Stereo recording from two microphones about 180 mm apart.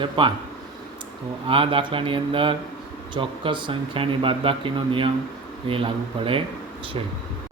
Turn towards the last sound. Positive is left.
turn(degrees=-30)  # may be behind; listen again after turning